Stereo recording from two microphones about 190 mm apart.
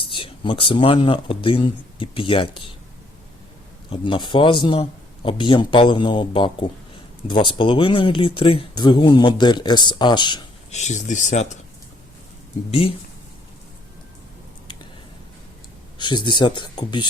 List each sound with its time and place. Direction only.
0.0 s speech: 25° left (ahead or behind)
3.8 s speech: 25° left (ahead or behind)
10.7 s speech: 35° left (ahead or behind)
16.0 s speech: 25° left (ahead or behind)